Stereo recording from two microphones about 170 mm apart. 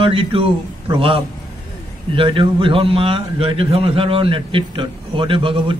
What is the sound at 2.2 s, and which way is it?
A man's voice, 30° right (ahead or behind).